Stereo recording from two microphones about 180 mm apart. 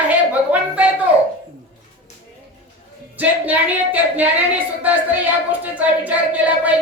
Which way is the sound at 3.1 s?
10° right (ahead or behind).